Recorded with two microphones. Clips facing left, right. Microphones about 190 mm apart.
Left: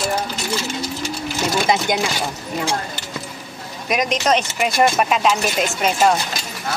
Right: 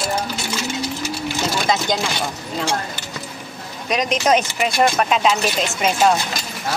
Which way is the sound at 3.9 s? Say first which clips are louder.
Right 1 dB; 5° left (ahead or behind).